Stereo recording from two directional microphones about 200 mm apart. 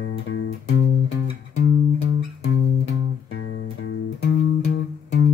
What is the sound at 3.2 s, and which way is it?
Music, 85° left.